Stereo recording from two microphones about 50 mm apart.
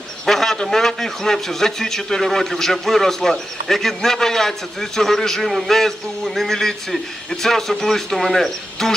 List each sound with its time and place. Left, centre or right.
0.3 s a man's voice: centre